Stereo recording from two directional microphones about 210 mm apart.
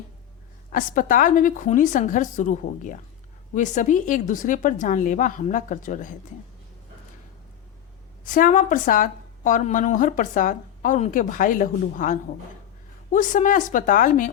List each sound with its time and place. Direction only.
0.7 s a woman's voice: 40° left (ahead or behind)
8.2 s a woman's voice: 40° left (ahead or behind)